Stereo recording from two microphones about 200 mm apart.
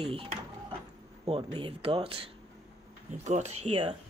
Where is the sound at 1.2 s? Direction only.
25° right (ahead or behind).